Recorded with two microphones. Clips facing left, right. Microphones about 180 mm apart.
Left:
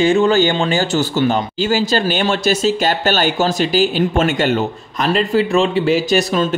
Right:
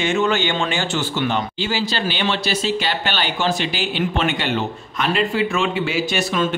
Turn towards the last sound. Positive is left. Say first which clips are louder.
# left 6 dB
turn(degrees=40)  # may be behind; listen again after turning